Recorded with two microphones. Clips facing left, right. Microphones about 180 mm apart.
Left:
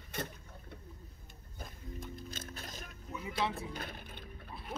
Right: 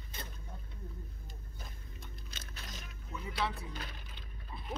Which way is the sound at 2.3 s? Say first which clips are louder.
Left 4 dB; 50° left (ahead or behind).